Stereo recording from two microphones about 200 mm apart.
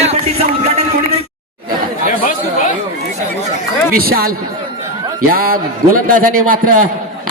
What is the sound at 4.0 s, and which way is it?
A man's voice, 50° right (ahead or behind).